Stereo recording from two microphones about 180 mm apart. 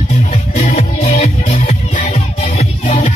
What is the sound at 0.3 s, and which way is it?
Music, 40° left (ahead or behind).